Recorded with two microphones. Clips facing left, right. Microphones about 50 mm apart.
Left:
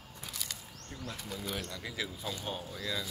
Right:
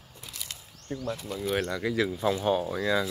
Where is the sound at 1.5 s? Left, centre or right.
Right.